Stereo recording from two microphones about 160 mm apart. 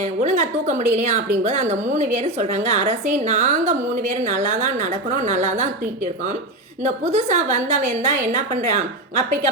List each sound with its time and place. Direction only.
0.0 s a woman's voice: 50° right (ahead or behind)
6.8 s a woman's voice: 45° right (ahead or behind)